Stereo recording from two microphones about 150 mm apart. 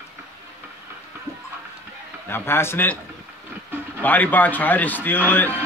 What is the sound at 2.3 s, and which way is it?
Speech, 15° left (ahead or behind).